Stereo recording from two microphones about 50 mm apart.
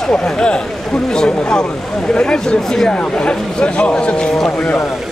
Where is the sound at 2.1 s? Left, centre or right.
Centre.